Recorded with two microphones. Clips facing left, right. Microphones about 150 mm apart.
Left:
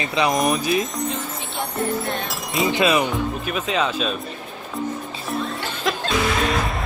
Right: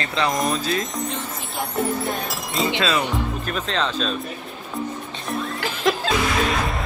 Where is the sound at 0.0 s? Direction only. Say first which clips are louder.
Left 2 dB; 15° left (ahead or behind).